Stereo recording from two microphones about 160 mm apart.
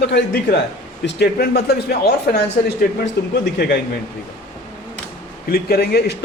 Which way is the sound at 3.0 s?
90° left.